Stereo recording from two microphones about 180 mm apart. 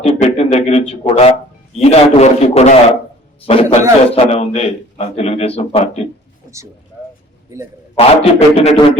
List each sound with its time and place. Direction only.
0.1 s a man's voice: 35° left (ahead or behind)
7.5 s a man's voice: 15° right (ahead or behind)
7.9 s a man's voice: 35° left (ahead or behind)